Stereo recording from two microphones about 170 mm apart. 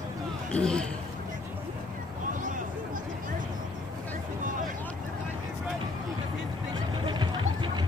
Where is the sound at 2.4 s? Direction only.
50° right (ahead or behind).